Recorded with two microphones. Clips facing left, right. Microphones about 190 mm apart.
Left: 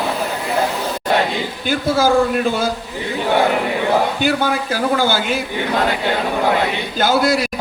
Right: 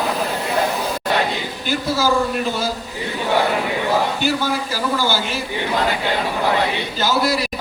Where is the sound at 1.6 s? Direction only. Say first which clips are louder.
Left 4 dB; 50° left (ahead or behind).